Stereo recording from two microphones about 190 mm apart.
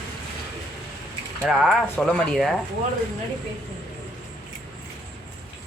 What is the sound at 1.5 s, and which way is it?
Speech, centre (ahead or behind).